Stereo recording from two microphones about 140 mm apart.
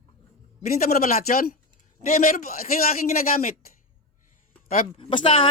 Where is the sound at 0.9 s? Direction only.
90° left.